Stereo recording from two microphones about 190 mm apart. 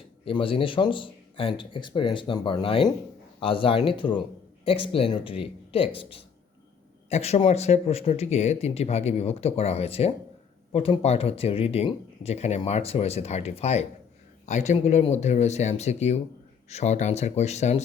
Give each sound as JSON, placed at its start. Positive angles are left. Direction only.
{"t": 0.3, "sound": "speech", "side_deg": 30}